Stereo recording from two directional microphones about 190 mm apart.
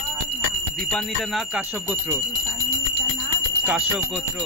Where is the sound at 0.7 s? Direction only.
Centre (ahead or behind).